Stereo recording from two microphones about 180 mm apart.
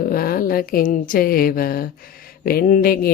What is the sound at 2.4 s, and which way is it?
Mantra, 55° left (ahead or behind).